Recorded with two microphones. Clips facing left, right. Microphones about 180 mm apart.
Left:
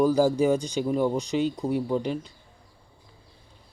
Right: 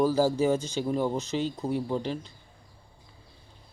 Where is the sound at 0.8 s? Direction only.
Centre (ahead or behind).